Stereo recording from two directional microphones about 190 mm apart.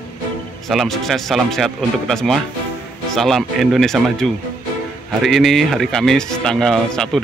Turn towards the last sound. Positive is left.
turn(degrees=5)  # may be behind; listen again after turning